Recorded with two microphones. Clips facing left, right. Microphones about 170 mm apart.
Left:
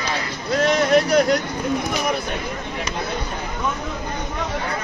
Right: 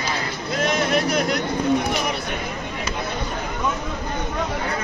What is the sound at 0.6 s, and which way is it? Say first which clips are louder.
Vehicle: left 4 dB; 35° left (ahead or behind).